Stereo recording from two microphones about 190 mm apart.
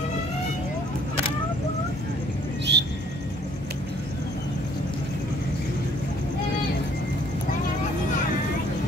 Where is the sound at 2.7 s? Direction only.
65° right (ahead or behind).